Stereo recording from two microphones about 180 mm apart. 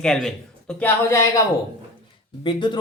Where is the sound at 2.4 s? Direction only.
25° left (ahead or behind).